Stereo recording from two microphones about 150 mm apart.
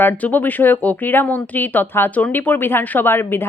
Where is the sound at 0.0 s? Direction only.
10° left (ahead or behind).